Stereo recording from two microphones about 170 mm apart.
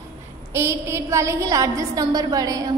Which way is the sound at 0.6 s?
15° right (ahead or behind).